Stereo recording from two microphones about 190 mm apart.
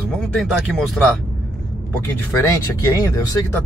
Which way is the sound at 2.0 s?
15° left (ahead or behind).